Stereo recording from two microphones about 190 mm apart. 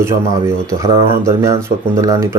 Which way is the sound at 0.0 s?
15° right (ahead or behind).